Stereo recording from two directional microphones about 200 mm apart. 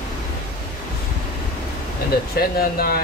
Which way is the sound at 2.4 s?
50° left (ahead or behind).